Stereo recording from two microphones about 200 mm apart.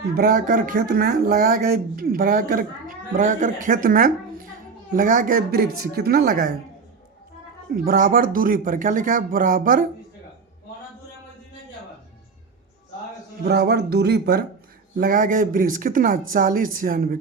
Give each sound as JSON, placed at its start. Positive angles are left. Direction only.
{"t": 0.2, "sound": "a man's voice", "side_deg": -45}
{"t": 7.9, "sound": "a man's voice", "side_deg": -45}
{"t": 13.4, "sound": "a man's voice", "side_deg": -55}